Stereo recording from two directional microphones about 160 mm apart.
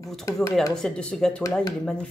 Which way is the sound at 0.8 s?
5° left (ahead or behind).